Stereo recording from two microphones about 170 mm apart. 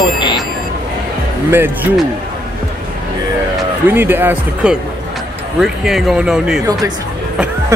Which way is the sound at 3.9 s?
10° right (ahead or behind).